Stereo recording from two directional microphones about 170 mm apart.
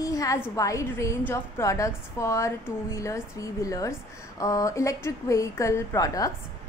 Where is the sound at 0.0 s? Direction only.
20° left (ahead or behind).